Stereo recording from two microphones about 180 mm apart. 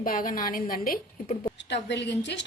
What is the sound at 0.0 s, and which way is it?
Speech, 50° left (ahead or behind).